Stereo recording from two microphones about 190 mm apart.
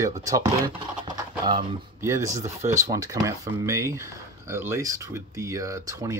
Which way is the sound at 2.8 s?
15° right (ahead or behind).